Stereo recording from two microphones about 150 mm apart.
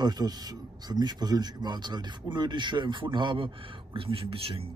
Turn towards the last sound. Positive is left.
turn(degrees=-40)  # may be behind; listen again after turning